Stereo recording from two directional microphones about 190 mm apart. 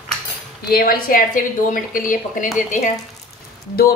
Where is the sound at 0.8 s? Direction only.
50° left (ahead or behind).